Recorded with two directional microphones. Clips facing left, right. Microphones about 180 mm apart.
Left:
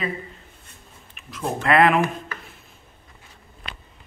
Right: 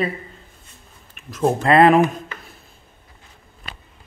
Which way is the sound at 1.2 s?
40° right (ahead or behind).